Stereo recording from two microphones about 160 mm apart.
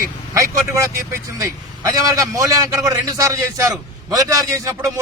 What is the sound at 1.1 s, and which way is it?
A man's voice, 20° right (ahead or behind).